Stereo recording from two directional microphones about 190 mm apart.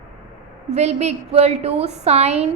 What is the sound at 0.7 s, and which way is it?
A woman's voice, 35° right (ahead or behind).